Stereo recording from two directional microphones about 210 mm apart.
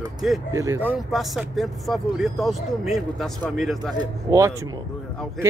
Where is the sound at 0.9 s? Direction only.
5° right (ahead or behind).